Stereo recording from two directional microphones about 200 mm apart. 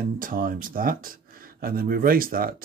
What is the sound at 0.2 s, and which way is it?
Speech, 45° right (ahead or behind).